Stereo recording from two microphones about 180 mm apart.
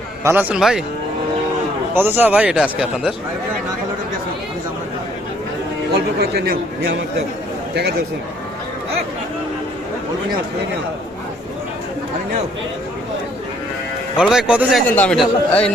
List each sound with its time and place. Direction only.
0.3 s speech: 5° right (ahead or behind)
2.0 s speech: 10° right (ahead or behind)
5.9 s a man's voice: 65° right (ahead or behind)
14.2 s speech: 5° right (ahead or behind)
14.8 s a man's voice: 10° left (ahead or behind)